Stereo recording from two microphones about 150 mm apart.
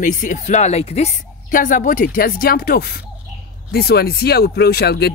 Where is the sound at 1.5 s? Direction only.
65° left (ahead or behind).